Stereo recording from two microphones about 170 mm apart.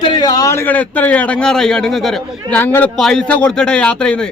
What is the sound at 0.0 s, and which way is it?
A man's voice, 25° left (ahead or behind).